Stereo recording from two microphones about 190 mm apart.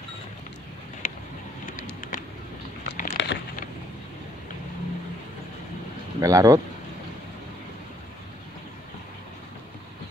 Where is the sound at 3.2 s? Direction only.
75° left (ahead or behind).